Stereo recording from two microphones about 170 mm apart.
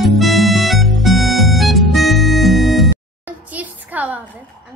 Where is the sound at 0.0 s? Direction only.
Centre (ahead or behind).